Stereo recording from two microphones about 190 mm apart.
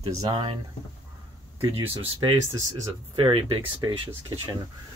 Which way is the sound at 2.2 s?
20° right (ahead or behind).